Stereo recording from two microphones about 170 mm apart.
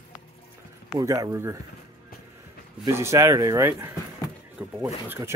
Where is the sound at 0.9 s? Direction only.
20° right (ahead or behind).